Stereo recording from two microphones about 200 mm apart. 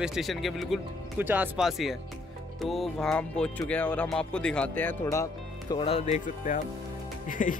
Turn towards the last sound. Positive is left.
turn(degrees=40)  # may be behind; listen again after turning